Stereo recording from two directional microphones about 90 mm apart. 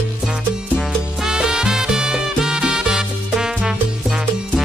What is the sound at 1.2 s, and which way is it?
Music, 10° right (ahead or behind).